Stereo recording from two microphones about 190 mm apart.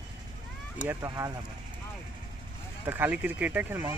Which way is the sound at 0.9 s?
15° right (ahead or behind).